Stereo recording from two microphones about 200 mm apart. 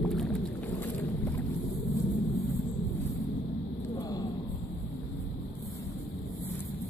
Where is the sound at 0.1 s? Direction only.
Centre (ahead or behind).